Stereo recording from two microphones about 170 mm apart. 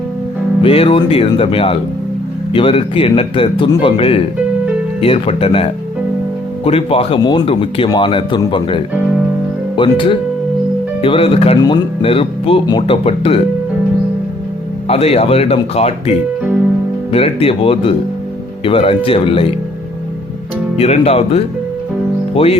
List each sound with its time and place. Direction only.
0.6 s speech: 35° left (ahead or behind)
14.8 s speech: 35° left (ahead or behind)
20.7 s speech: 35° left (ahead or behind)